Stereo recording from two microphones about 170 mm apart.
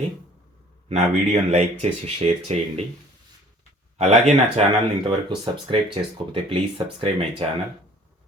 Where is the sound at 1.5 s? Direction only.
40° right (ahead or behind).